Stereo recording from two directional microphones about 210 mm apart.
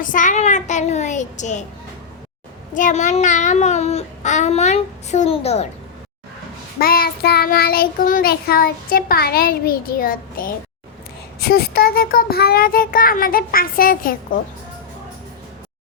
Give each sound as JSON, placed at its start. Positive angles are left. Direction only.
{"t": 0.0, "sound": "speech", "side_deg": 40}
{"t": 2.7, "sound": "speech", "side_deg": 35}
{"t": 6.7, "sound": "child singing", "side_deg": 45}